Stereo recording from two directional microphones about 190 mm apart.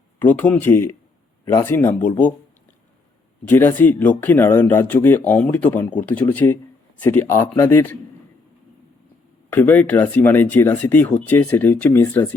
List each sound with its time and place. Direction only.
0.2 s speech: 10° left (ahead or behind)
3.4 s speech: 10° left (ahead or behind)
9.5 s speech: 10° left (ahead or behind)